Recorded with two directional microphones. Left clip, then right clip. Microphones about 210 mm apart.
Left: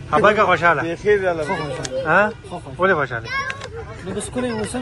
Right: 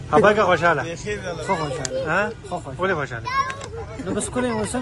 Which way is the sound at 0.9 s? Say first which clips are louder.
Left 11 dB; 30° left (ahead or behind).